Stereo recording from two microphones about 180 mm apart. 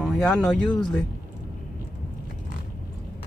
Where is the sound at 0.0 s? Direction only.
Centre (ahead or behind).